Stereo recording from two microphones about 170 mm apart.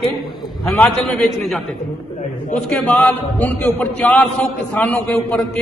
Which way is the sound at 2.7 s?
10° left (ahead or behind).